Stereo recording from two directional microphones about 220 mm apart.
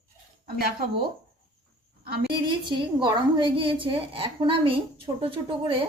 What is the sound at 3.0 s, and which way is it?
A woman's voice, 20° right (ahead or behind).